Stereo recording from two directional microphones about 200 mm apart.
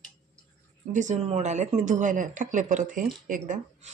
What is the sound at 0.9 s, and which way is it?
Speech, 35° right (ahead or behind).